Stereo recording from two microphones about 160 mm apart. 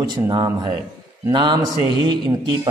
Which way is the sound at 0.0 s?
25° right (ahead or behind).